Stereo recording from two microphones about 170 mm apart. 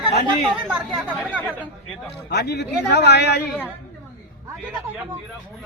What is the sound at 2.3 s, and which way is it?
A man's voice, 85° left.